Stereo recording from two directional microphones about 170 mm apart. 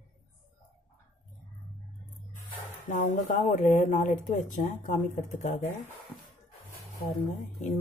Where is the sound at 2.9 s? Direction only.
50° left (ahead or behind).